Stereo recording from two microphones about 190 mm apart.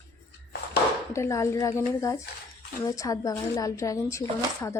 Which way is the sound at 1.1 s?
15° left (ahead or behind).